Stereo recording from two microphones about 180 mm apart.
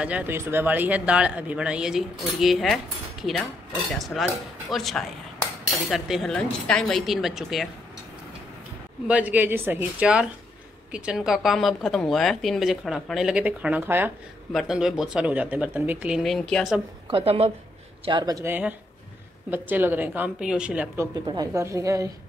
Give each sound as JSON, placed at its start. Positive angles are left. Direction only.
{"t": 0.0, "sound": "a woman's voice", "side_deg": -10}
{"t": 9.0, "sound": "a woman's voice", "side_deg": -10}
{"t": 17.1, "sound": "a woman's voice", "side_deg": -35}
{"t": 18.0, "sound": "speech", "side_deg": -25}